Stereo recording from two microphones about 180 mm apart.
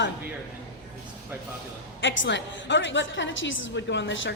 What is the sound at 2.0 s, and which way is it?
A woman's voice, 90° left.